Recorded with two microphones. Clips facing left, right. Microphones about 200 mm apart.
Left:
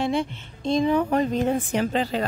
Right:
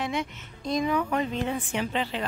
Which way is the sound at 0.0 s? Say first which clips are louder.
Left 6 dB; 30° left (ahead or behind).